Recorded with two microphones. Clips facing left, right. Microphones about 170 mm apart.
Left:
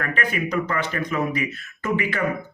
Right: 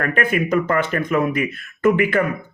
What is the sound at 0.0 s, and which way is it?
Speech, 50° right (ahead or behind).